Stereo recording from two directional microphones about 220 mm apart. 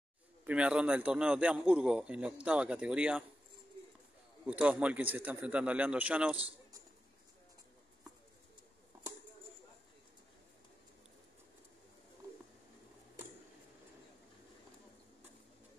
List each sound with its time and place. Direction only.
0.5 s a man's voice: 5° right (ahead or behind)
4.5 s a man's voice: 5° right (ahead or behind)
6.3 s a sound: 25° right (ahead or behind)